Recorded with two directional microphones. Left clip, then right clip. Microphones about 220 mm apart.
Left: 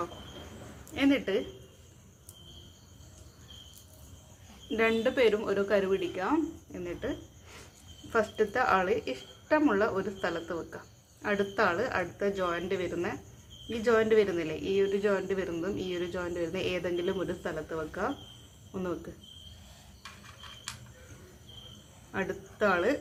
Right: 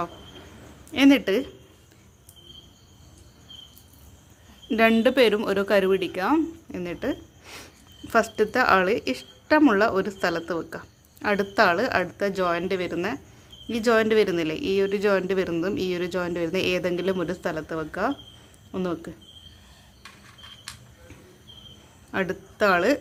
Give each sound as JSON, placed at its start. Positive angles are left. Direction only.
{"t": 0.9, "sound": "a woman's voice", "side_deg": -55}
{"t": 4.7, "sound": "a woman's voice", "side_deg": -55}
{"t": 22.1, "sound": "speech", "side_deg": -50}